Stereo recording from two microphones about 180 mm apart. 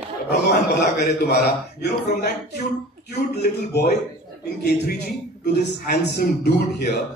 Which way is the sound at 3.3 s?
65° left (ahead or behind).